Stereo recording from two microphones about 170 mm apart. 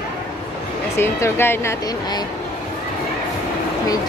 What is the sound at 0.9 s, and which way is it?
Speech, 15° left (ahead or behind).